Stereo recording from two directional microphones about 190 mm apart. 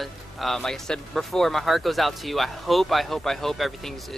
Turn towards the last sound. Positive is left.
turn(degrees=0)  # may be behind; listen again after turning